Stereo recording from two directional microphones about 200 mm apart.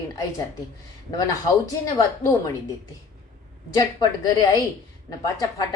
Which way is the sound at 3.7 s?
20° left (ahead or behind).